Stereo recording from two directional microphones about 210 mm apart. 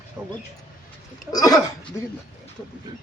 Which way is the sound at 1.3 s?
15° left (ahead or behind).